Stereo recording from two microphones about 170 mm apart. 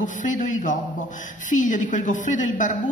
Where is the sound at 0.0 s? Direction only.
50° left (ahead or behind).